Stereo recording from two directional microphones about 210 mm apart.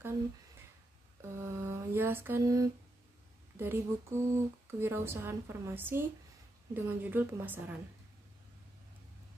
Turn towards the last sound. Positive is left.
turn(degrees=-10)  # may be behind; listen again after turning